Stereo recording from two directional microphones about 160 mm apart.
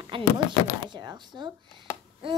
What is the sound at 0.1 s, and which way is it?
A child's voice, 30° right (ahead or behind).